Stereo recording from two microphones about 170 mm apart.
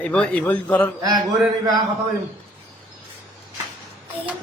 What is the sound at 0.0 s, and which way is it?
Speech, 5° left (ahead or behind).